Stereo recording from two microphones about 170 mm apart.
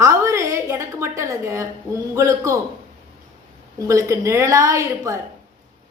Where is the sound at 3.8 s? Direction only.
20° right (ahead or behind).